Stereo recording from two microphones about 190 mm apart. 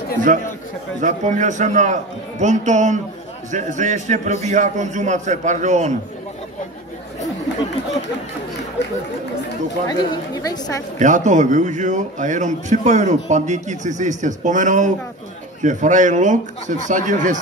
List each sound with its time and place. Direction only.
1.0 s a man's voice: 40° right (ahead or behind)
8.8 s speech: 65° left (ahead or behind)
9.8 s a woman's voice: 20° left (ahead or behind)
11.0 s a man's voice: 40° right (ahead or behind)